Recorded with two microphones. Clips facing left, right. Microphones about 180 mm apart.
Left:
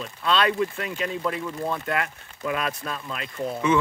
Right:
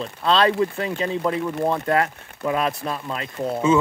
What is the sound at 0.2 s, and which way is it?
Speech, 35° right (ahead or behind).